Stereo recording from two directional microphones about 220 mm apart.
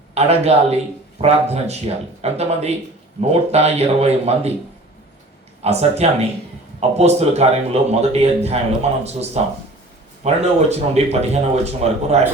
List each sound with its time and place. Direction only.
0.1 s a man's voice: 30° right (ahead or behind)
5.6 s a man's voice: 30° right (ahead or behind)